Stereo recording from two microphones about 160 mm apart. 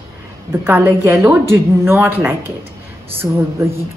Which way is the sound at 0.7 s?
10° right (ahead or behind).